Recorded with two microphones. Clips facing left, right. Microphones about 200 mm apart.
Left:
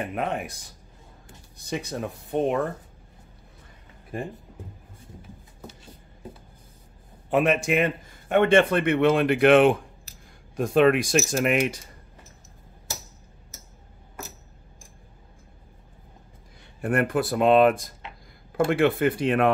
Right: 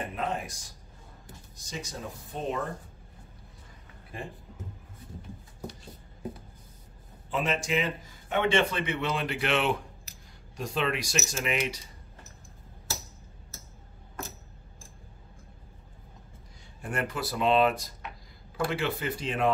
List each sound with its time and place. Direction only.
0.1 s a man's voice: 60° left (ahead or behind)
7.2 s a man's voice: 60° left (ahead or behind)
14.2 s clock: 10° left (ahead or behind)
16.8 s a man's voice: 55° left (ahead or behind)